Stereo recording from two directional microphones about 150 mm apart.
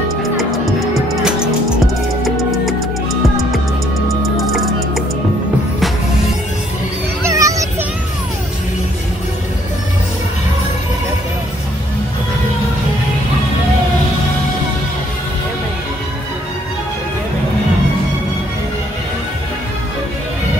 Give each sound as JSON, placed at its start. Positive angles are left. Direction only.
{"t": 0.2, "sound": "music", "side_deg": 0}
{"t": 7.2, "sound": "music", "side_deg": -20}